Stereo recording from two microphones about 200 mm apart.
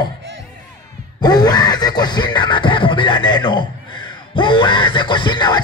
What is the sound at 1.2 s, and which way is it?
Music, 20° left (ahead or behind).